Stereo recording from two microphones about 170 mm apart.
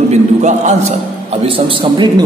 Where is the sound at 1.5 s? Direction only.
30° right (ahead or behind).